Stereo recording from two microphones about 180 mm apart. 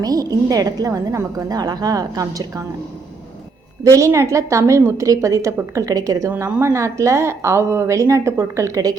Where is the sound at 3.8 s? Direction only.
15° right (ahead or behind).